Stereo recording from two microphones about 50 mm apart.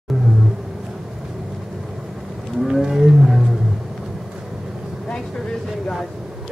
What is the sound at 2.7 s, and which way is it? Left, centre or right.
Whale vocalization, centre.